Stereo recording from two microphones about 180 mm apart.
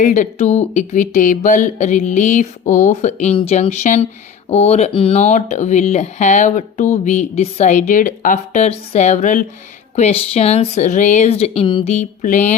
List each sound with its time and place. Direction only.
0.0 s speech: 45° left (ahead or behind)